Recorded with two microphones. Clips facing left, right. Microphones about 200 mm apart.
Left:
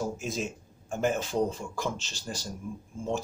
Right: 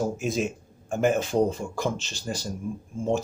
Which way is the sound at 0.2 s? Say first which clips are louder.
Right 6 dB; 60° right (ahead or behind).